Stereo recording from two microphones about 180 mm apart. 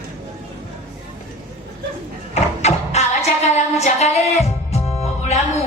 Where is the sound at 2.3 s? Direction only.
35° left (ahead or behind).